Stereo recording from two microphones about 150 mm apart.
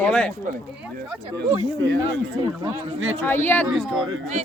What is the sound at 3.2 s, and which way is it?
Speech, 15° left (ahead or behind).